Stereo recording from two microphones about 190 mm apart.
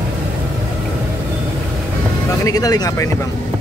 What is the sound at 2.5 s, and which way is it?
Speech, 20° left (ahead or behind).